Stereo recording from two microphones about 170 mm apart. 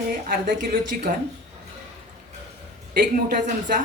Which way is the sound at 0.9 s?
55° right (ahead or behind).